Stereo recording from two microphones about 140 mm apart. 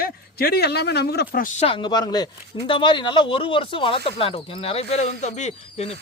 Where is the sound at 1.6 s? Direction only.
40° left (ahead or behind).